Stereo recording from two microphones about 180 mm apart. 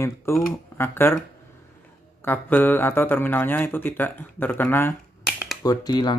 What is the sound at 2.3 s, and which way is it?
Speech, 10° left (ahead or behind).